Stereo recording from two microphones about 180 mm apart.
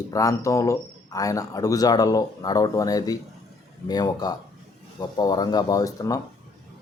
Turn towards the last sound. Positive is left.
turn(degrees=20)  # may be behind; listen again after turning